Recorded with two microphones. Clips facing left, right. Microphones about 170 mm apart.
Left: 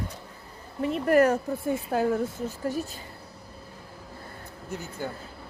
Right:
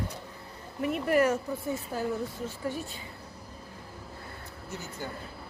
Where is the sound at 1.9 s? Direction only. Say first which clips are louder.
Left 8 dB; 65° left (ahead or behind).